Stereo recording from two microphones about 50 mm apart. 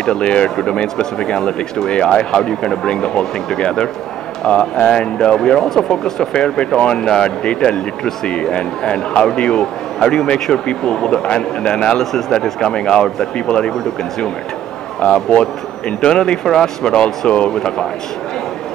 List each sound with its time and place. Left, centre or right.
0.0 s speech: centre
15.0 s speech: centre